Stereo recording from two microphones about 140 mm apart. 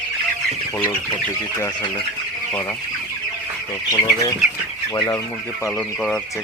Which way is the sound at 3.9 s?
25° left (ahead or behind).